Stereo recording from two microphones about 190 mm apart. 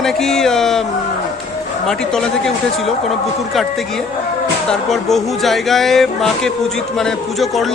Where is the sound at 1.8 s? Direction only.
5° left (ahead or behind).